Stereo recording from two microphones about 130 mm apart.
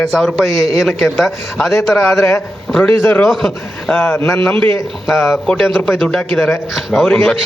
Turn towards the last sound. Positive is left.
turn(degrees=0)  # may be behind; listen again after turning